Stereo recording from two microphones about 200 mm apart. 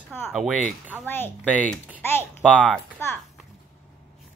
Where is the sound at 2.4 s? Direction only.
5° right (ahead or behind).